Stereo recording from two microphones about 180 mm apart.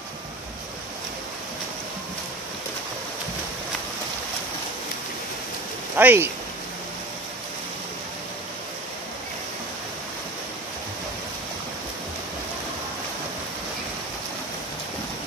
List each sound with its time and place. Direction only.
5.9 s speech: 10° right (ahead or behind)